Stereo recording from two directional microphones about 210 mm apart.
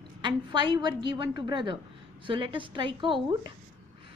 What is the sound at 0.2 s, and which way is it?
A woman's voice, 20° right (ahead or behind).